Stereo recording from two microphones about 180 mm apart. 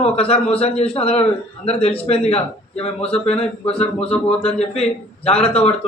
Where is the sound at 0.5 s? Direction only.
30° left (ahead or behind).